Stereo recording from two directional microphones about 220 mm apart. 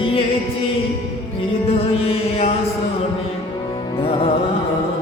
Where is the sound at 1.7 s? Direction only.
25° left (ahead or behind).